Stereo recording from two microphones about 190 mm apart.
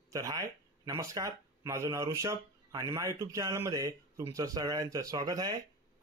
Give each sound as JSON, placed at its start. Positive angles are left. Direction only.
{"t": 0.1, "sound": "speech", "side_deg": -20}